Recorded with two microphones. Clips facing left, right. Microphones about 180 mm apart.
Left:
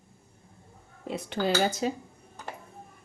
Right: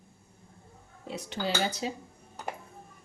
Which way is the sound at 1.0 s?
55° left (ahead or behind).